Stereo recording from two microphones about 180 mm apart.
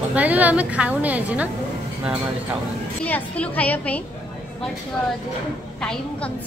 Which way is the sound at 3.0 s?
10° left (ahead or behind).